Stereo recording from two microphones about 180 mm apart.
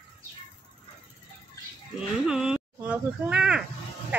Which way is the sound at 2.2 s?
5° right (ahead or behind).